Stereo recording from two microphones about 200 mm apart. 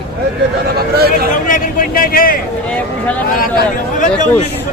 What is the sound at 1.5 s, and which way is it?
Speech, 45° left (ahead or behind).